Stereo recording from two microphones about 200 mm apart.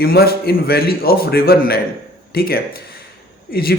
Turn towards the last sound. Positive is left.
turn(degrees=50)  # may be behind; listen again after turning